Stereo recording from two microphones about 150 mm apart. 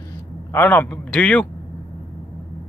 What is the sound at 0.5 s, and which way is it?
Speech, 15° left (ahead or behind).